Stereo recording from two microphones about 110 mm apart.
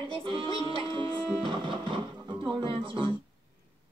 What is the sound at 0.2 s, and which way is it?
Music, 50° right (ahead or behind).